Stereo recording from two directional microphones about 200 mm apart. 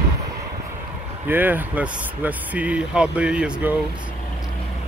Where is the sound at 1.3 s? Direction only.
10° right (ahead or behind).